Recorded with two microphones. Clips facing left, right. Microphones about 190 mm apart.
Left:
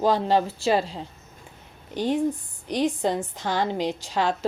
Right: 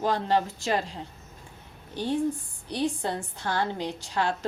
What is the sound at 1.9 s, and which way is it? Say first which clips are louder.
A woman's voice: left 3 dB; 15° left (ahead or behind).